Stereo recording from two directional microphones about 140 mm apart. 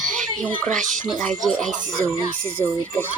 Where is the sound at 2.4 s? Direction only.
10° left (ahead or behind).